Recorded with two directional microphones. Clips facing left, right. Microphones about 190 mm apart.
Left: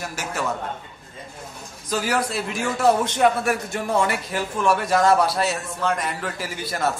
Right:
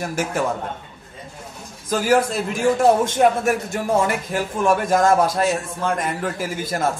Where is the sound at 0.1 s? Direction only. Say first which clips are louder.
Right 8 dB; 50° right (ahead or behind).